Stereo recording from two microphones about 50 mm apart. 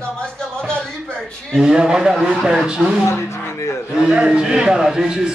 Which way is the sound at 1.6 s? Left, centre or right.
Centre.